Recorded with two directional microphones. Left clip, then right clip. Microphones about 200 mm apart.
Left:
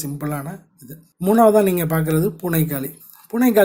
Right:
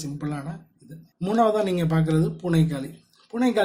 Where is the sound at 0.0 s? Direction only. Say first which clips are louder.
Left 5 dB; 35° left (ahead or behind).